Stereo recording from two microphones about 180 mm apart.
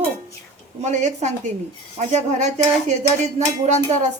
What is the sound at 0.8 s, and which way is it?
Speech, 40° right (ahead or behind).